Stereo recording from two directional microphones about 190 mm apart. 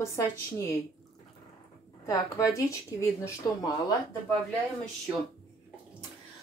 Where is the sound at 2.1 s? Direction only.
15° left (ahead or behind).